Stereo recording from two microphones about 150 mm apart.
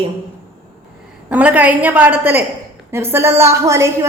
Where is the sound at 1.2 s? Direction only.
10° right (ahead or behind).